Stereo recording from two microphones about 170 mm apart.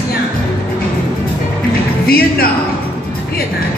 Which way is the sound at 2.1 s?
60° left (ahead or behind).